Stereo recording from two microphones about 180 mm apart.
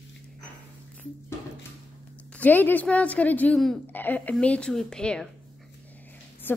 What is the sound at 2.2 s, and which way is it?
A woman's voice, 5° left (ahead or behind).